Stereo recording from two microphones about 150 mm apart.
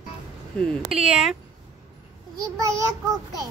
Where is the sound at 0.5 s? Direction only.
5° left (ahead or behind).